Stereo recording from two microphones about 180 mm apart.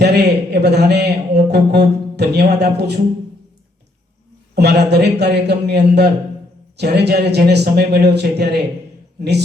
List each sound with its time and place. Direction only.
0.0 s a man's voice: 65° right (ahead or behind)
4.5 s a man's voice: 65° right (ahead or behind)